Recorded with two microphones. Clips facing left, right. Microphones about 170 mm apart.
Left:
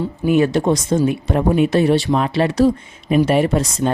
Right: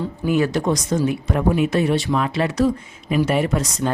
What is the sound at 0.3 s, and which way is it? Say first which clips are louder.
Speech: left 4 dB; 25° left (ahead or behind).